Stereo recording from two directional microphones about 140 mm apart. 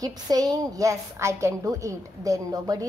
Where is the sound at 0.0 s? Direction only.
25° right (ahead or behind).